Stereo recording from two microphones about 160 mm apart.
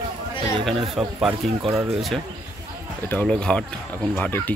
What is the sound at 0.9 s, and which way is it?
Speech, centre (ahead or behind).